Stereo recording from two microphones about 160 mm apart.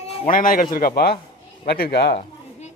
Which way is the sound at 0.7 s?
70° left (ahead or behind).